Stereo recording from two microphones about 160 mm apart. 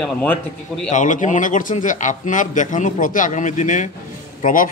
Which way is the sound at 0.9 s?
50° left (ahead or behind).